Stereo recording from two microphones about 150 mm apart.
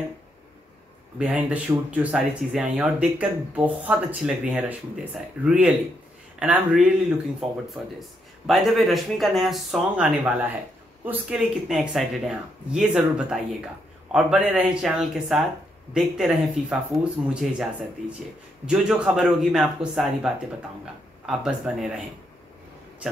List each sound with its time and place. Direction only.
1.1 s speech: 5° right (ahead or behind)
18.7 s speech: 5° right (ahead or behind)